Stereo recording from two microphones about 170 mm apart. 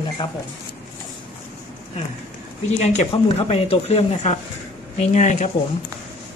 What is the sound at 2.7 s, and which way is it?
Speech, 40° left (ahead or behind).